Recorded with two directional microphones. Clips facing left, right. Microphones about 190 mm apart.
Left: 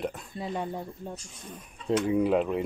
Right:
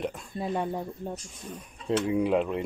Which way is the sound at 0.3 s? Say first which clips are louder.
Right 3 dB; 50° right (ahead or behind).